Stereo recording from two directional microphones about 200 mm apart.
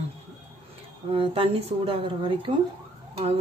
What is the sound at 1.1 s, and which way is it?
Speech, 30° right (ahead or behind).